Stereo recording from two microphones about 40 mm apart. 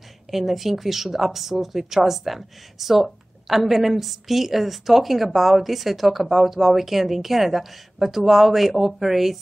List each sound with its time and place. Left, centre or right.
0.3 s a woman's voice: centre